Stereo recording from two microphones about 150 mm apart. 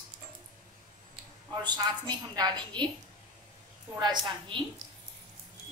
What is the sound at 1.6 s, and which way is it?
A woman's voice, 30° right (ahead or behind).